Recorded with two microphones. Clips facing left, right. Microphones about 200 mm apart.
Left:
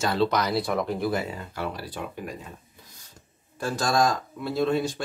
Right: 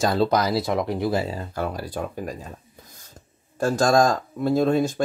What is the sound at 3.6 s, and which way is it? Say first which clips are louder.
Speech: right 5 dB; 45° right (ahead or behind).